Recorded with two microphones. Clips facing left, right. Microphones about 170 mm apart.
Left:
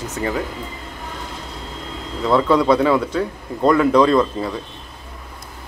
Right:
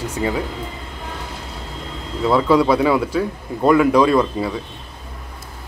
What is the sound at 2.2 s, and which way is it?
Speech, 5° right (ahead or behind).